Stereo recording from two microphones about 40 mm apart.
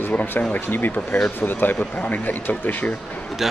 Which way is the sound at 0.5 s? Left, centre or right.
Left.